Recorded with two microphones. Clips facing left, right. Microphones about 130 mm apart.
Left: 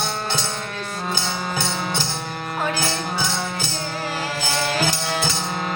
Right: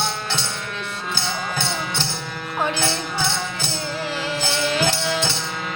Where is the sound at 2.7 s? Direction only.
40° left (ahead or behind).